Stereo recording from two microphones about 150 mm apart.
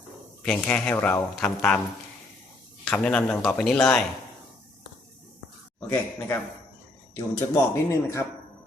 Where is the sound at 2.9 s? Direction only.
10° left (ahead or behind).